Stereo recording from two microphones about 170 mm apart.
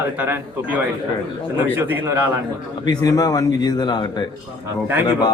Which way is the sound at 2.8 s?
20° left (ahead or behind).